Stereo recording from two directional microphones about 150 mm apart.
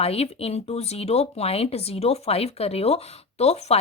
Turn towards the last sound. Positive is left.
turn(degrees=45)  # may be behind; listen again after turning